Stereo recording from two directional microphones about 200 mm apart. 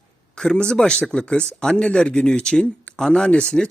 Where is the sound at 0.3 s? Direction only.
5° left (ahead or behind).